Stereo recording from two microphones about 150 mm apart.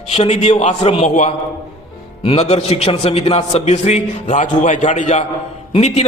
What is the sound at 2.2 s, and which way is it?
A man's voice, 45° left (ahead or behind).